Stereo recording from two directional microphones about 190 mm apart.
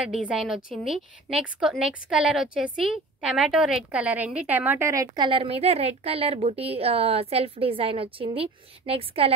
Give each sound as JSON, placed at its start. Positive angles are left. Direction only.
{"t": 0.0, "sound": "a woman's voice", "side_deg": 0}